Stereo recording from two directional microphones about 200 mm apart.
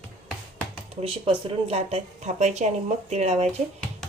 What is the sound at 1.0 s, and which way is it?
A woman's voice, 30° right (ahead or behind).